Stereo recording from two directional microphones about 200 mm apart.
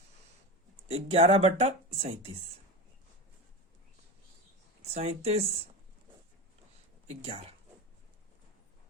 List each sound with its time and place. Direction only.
0.9 s speech: 30° right (ahead or behind)
4.9 s speech: 30° right (ahead or behind)
7.1 s speech: 30° right (ahead or behind)